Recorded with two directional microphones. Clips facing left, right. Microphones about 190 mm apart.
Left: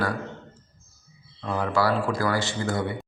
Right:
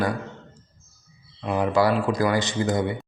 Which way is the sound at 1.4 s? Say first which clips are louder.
Right 3 dB; 15° right (ahead or behind).